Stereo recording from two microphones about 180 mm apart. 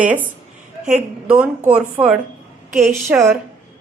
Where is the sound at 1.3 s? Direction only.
10° right (ahead or behind).